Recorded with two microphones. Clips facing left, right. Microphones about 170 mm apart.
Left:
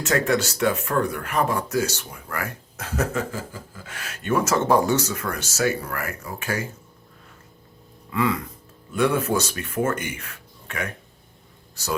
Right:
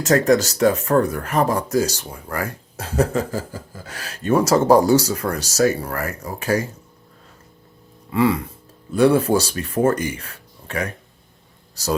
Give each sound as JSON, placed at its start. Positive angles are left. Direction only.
{"t": 0.0, "sound": "speech", "side_deg": -40}
{"t": 8.1, "sound": "speech", "side_deg": -30}